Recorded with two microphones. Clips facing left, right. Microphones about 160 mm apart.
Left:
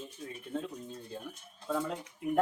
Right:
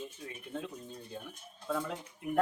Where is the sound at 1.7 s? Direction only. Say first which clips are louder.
Left 2 dB; 5° left (ahead or behind).